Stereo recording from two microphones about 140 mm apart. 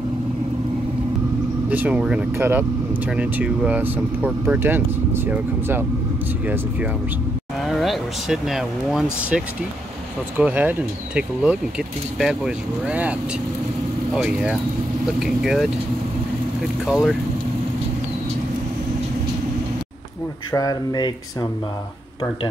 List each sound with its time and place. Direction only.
1.7 s speech: 10° right (ahead or behind)
7.6 s speech: centre (ahead or behind)
14.1 s speech: 5° right (ahead or behind)
16.8 s speech: 5° right (ahead or behind)
20.5 s speech: 30° left (ahead or behind)